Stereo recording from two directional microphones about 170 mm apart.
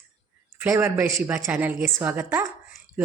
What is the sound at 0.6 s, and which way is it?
Speech, 15° right (ahead or behind).